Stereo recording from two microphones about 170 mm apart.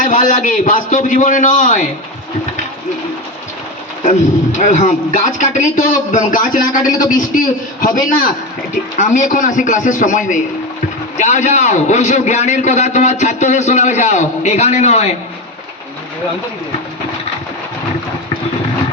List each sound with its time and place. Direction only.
0.0 s a man's voice: 50° left (ahead or behind)
4.0 s a man's voice: 45° left (ahead or behind)